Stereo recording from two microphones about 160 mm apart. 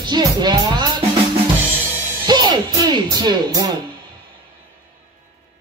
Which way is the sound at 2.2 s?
25° right (ahead or behind).